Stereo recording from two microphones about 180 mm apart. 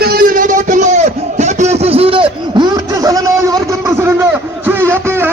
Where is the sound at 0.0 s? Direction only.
55° right (ahead or behind); by 3.2 s 20° right (ahead or behind).